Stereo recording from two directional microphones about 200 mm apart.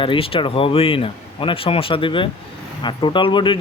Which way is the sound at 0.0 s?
25° left (ahead or behind).